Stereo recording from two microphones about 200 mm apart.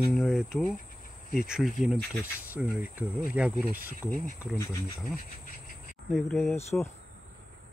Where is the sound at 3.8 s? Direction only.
45° right (ahead or behind).